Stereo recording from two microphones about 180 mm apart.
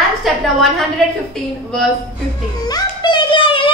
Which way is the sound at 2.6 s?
25° left (ahead or behind).